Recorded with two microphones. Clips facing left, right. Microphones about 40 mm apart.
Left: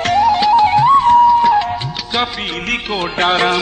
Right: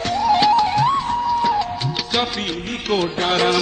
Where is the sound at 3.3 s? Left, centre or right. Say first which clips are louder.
Left 3 dB; left.